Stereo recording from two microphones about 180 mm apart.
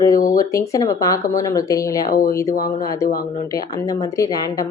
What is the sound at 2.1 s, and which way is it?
Speech, 55° left (ahead or behind).